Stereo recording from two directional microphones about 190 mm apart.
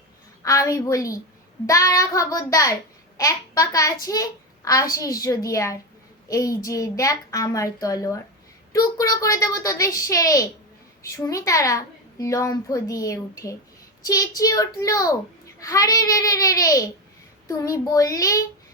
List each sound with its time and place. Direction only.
0.4 s a child's voice: 20° left (ahead or behind)